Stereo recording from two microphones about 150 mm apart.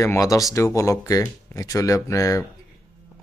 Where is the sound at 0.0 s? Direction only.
20° left (ahead or behind).